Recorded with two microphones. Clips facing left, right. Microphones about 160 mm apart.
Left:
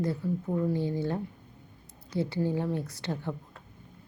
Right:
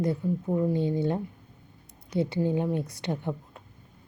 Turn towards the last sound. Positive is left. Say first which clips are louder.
# right 3 dB
turn(degrees=-20)  # may be behind; listen again after turning